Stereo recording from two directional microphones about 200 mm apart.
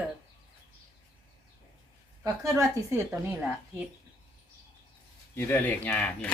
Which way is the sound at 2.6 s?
10° right (ahead or behind).